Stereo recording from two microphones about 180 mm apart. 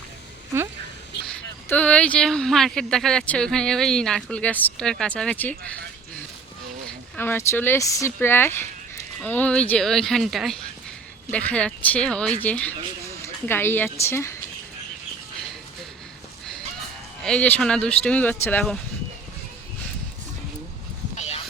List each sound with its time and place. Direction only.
0.5 s speech: 15° right (ahead or behind)
1.7 s speech: 5° left (ahead or behind)
7.2 s speech: 10° left (ahead or behind)
17.2 s speech: 5° left (ahead or behind)
21.2 s goose: 35° left (ahead or behind)